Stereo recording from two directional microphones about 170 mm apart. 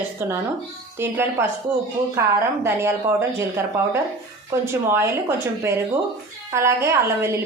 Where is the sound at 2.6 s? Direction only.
15° right (ahead or behind).